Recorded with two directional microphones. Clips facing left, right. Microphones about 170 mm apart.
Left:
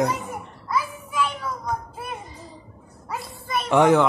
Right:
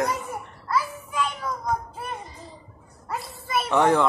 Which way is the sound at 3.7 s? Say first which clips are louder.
Left 4 dB; 10° left (ahead or behind).